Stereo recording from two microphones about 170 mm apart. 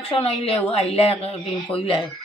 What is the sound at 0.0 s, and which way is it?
Speech, 35° left (ahead or behind).